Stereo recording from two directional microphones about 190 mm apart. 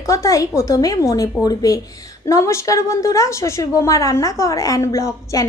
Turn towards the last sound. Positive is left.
turn(degrees=15)  # may be behind; listen again after turning